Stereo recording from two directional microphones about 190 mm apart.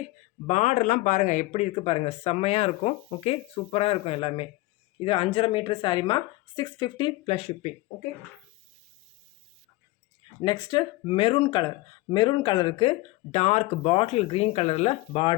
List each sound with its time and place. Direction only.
0.4 s speech: 40° left (ahead or behind)
10.4 s speech: 25° left (ahead or behind)